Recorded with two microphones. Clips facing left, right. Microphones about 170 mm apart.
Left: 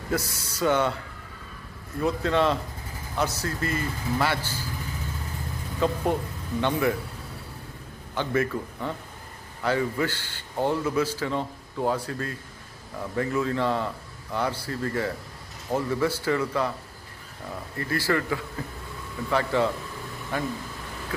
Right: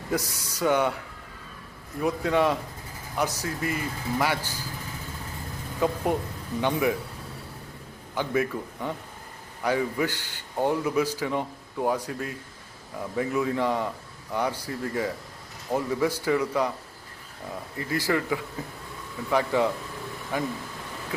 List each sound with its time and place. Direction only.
0.1 s a man's voice: 15° right (ahead or behind)
2.0 s a man's voice: 10° right (ahead or behind)
5.8 s a man's voice: 15° right (ahead or behind)
8.1 s a man's voice: 10° right (ahead or behind)
17.7 s a man's voice: 15° right (ahead or behind)